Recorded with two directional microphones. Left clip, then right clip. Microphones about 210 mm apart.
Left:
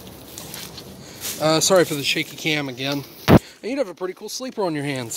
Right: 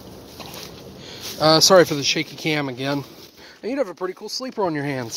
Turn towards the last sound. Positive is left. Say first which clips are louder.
# right 1 dB
turn(degrees=0)  # may be behind; listen again after turning